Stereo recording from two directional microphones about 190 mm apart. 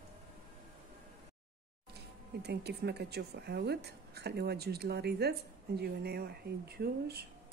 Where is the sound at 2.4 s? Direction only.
60° right (ahead or behind).